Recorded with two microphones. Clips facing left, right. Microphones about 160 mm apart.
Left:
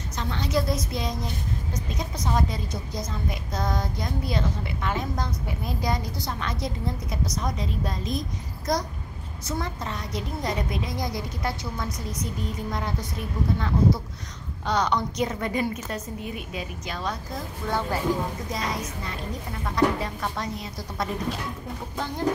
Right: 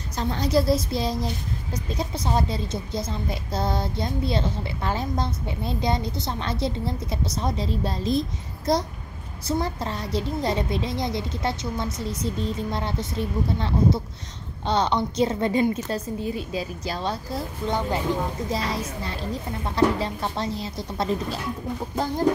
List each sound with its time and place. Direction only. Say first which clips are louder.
0.2 s a woman's voice: right 4 dB; 35° right (ahead or behind)
17.7 s a woman's voice: right 1 dB; 20° right (ahead or behind)
18.5 s a woman's voice: right 3 dB; 30° right (ahead or behind)